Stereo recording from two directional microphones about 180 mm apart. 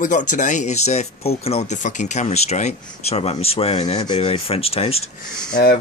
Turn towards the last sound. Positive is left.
turn(degrees=60)  # may be behind; listen again after turning